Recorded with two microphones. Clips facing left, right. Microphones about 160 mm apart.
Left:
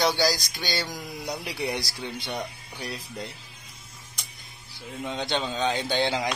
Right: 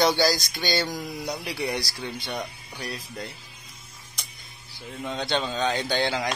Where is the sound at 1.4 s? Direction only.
20° left (ahead or behind).